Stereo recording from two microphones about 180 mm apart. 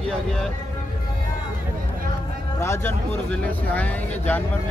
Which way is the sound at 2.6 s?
15° left (ahead or behind).